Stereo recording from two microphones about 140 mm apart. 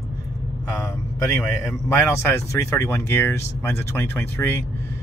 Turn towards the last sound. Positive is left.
turn(degrees=15)  # may be behind; listen again after turning